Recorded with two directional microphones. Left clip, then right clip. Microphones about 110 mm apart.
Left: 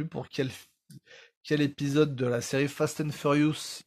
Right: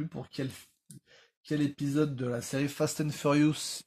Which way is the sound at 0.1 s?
55° left (ahead or behind).